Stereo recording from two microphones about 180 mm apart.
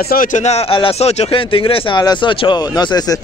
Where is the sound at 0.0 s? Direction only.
55° left (ahead or behind).